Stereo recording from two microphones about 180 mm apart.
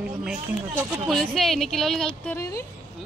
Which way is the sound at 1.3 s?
Centre (ahead or behind).